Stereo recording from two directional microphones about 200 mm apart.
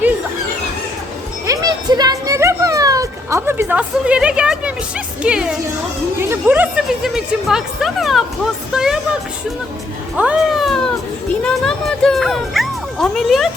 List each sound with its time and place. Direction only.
1.5 s a sound: 20° right (ahead or behind); by 5.5 s 5° right (ahead or behind)
6.3 s speech: 10° right (ahead or behind)
10.2 s speech: 5° right (ahead or behind)